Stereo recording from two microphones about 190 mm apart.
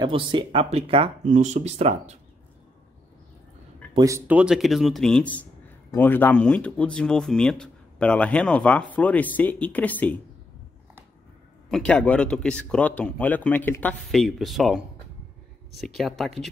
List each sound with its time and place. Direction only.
0.0 s speech: 25° right (ahead or behind)
3.9 s speech: 15° right (ahead or behind); by 10.1 s 10° left (ahead or behind)
11.7 s speech: 5° left (ahead or behind)